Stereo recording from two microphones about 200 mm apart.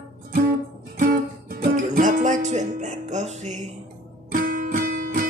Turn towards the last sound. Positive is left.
turn(degrees=-45)  # may be behind; listen again after turning